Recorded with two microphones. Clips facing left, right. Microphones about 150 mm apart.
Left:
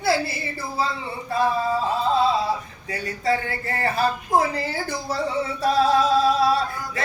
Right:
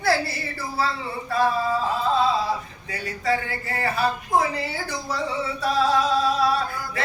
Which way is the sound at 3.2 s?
35° left (ahead or behind).